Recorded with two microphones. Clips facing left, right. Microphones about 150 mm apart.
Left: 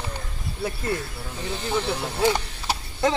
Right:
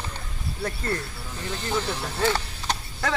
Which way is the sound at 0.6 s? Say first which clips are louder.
Left 2 dB; 10° left (ahead or behind).